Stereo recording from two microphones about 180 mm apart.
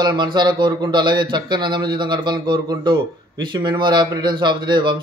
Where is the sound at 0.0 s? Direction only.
25° right (ahead or behind).